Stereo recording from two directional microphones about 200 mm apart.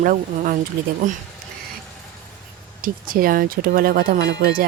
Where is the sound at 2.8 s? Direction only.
45° right (ahead or behind).